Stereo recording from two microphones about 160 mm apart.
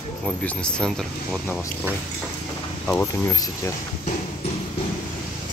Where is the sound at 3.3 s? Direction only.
20° left (ahead or behind).